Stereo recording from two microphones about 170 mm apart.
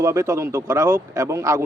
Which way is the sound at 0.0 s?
20° right (ahead or behind).